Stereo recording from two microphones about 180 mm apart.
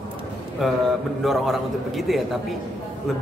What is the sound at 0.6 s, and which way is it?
A man's voice, centre (ahead or behind).